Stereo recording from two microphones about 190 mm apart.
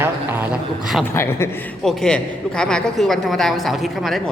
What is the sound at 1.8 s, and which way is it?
A woman's voice, centre (ahead or behind).